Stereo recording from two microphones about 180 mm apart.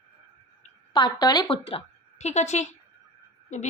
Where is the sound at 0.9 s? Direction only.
25° left (ahead or behind).